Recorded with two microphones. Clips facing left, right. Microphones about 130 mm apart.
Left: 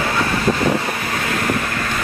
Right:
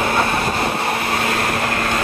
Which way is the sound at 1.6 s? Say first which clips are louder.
Right 3 dB; 50° right (ahead or behind).